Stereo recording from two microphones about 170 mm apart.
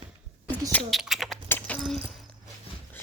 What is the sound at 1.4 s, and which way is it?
Typing, 15° left (ahead or behind).